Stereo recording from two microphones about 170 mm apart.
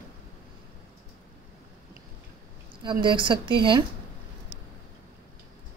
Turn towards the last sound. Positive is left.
turn(degrees=-30)  # may be behind; listen again after turning